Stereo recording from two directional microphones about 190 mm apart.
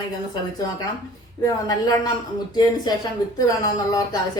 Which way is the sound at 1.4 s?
20° left (ahead or behind).